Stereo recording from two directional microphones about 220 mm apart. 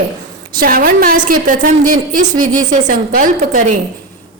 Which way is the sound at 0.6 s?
40° right (ahead or behind).